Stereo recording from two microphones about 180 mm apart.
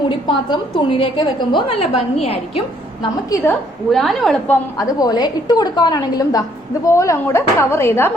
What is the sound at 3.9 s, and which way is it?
Speech, centre (ahead or behind).